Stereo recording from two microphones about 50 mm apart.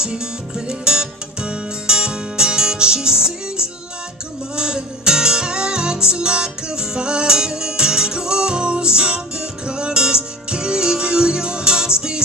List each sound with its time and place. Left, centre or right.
0.7 s music: centre